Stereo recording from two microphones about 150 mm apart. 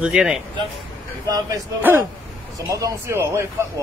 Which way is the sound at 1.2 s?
25° right (ahead or behind).